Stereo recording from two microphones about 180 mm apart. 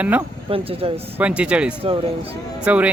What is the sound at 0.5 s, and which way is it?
Speech, 30° right (ahead or behind).